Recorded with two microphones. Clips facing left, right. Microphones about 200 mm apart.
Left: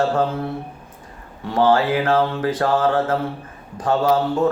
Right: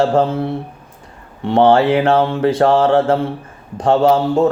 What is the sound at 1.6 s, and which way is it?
A man's voice, 25° right (ahead or behind).